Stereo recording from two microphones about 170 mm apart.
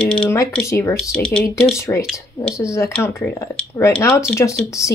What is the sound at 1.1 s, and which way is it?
Speech, 5° left (ahead or behind).